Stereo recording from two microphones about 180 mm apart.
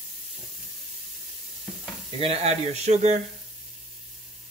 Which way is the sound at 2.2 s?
35° right (ahead or behind).